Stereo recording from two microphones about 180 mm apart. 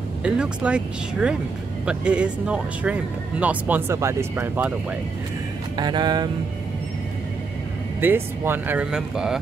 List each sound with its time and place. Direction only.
0.2 s speech: 5° right (ahead or behind)
5.8 s music: 25° right (ahead or behind)
8.0 s speech: 10° right (ahead or behind)